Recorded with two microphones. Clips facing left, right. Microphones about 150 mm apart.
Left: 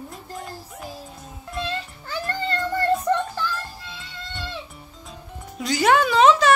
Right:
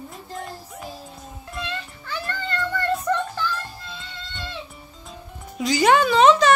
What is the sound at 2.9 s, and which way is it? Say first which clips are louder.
Music: left 2 dB; centre (ahead or behind).